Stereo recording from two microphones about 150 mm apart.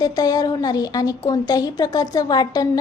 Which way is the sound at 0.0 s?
25° left (ahead or behind).